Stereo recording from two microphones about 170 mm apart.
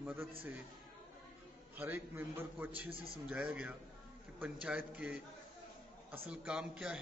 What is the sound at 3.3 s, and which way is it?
A man's voice, 10° right (ahead or behind).